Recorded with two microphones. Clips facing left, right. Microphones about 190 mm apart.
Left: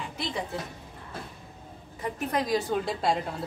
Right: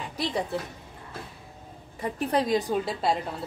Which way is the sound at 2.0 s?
30° right (ahead or behind).